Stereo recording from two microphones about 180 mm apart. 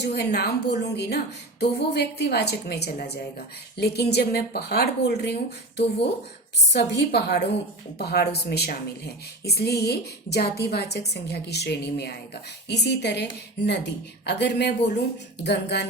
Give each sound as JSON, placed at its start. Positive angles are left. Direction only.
{"t": 0.0, "sound": "a woman's voice", "side_deg": 70}